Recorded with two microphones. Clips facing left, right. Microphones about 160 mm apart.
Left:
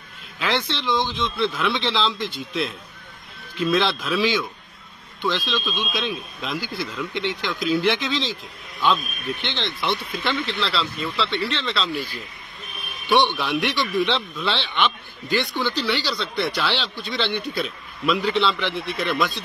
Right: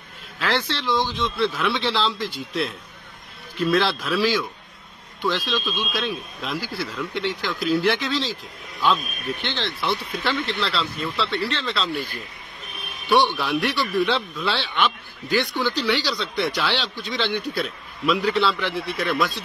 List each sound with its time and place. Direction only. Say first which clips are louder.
0.6 s a man's voice: even; 5° right (ahead or behind)
11.2 s speech: even; 30° left (ahead or behind)
11.6 s speech: even; centre (ahead or behind)
11.9 s speech: even; 55° right (ahead or behind)
13.1 s a man's voice: even; 5° right (ahead or behind)